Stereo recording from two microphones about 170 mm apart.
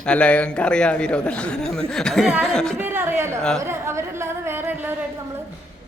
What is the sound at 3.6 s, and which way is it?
Speech, 15° right (ahead or behind).